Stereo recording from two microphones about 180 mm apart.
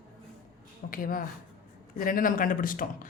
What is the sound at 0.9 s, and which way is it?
Speech, 50° left (ahead or behind).